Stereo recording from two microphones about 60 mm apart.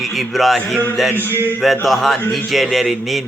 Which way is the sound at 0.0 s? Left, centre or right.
Centre.